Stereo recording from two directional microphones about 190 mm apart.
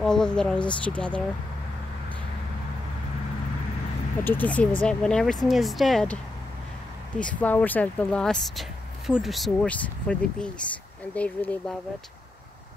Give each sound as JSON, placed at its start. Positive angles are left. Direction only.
{"t": 0.0, "sound": "speech", "side_deg": 5}
{"t": 4.2, "sound": "speech", "side_deg": 10}
{"t": 7.2, "sound": "speech", "side_deg": 5}